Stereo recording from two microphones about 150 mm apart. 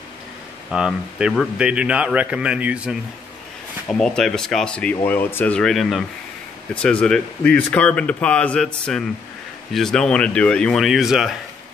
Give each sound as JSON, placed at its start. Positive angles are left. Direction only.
{"t": 0.7, "sound": "a man's voice", "side_deg": -5}
{"t": 4.0, "sound": "speech", "side_deg": 5}